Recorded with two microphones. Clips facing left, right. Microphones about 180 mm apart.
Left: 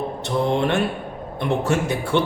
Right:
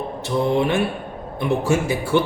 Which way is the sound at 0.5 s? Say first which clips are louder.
Right 1 dB; 5° right (ahead or behind).